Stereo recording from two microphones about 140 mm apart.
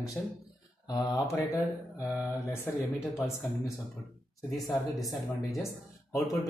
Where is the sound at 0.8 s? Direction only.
25° left (ahead or behind).